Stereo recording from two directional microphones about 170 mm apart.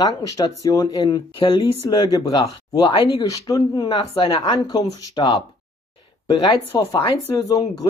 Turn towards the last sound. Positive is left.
turn(degrees=20)  # may be behind; listen again after turning